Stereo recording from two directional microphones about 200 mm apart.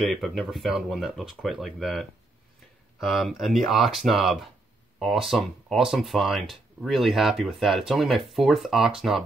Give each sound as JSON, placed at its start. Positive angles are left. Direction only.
{"t": 0.1, "sound": "speech", "side_deg": 0}